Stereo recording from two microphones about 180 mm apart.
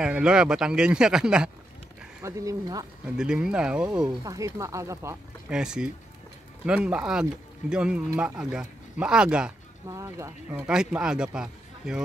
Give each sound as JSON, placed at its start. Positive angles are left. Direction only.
{"t": 0.0, "sound": "speech", "side_deg": -5}
{"t": 2.2, "sound": "speech", "side_deg": -20}
{"t": 3.2, "sound": "speech", "side_deg": -5}
{"t": 4.2, "sound": "speech", "side_deg": -20}
{"t": 5.5, "sound": "speech", "side_deg": -5}
{"t": 9.8, "sound": "speech", "side_deg": -15}
{"t": 10.7, "sound": "speech", "side_deg": -5}